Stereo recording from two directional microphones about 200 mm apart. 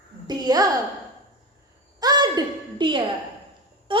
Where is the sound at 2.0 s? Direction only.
20° right (ahead or behind).